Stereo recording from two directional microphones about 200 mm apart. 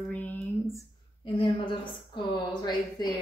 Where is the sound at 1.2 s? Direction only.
25° left (ahead or behind).